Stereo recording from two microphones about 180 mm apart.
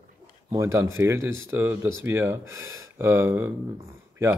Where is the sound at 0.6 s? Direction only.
15° right (ahead or behind).